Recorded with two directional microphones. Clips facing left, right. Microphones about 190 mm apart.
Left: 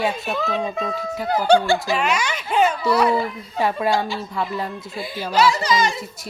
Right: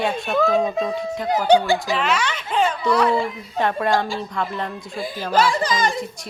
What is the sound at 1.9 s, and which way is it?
A child's voice, 10° left (ahead or behind).